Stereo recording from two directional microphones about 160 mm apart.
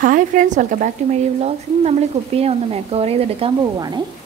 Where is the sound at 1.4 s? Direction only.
40° right (ahead or behind).